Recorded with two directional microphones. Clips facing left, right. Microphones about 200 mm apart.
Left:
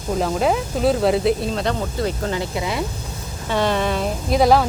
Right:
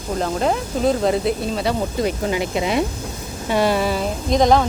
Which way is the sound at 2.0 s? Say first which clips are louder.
Right 2 dB; 15° right (ahead or behind).